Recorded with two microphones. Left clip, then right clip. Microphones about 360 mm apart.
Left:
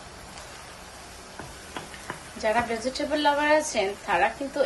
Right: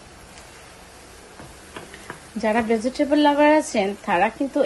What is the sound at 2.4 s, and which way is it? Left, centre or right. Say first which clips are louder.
A woman's voice: right 4 dB; centre.